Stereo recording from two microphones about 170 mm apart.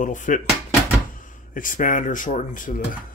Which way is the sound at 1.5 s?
50° left (ahead or behind).